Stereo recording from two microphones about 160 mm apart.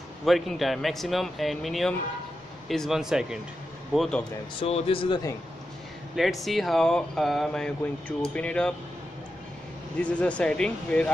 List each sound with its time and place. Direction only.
0.2 s speech: centre (ahead or behind)
4.6 s speech: 40° left (ahead or behind)
6.4 s speech: centre (ahead or behind)
10.0 s speech: 5° left (ahead or behind)